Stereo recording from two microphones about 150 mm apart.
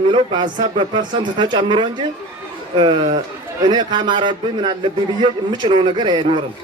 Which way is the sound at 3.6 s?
30° right (ahead or behind).